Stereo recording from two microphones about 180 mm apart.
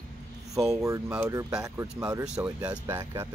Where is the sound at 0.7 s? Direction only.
15° right (ahead or behind).